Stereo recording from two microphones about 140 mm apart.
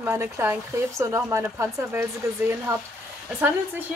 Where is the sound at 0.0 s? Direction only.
15° right (ahead or behind).